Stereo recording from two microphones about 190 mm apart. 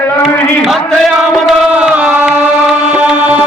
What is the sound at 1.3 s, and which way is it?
Music, 5° right (ahead or behind).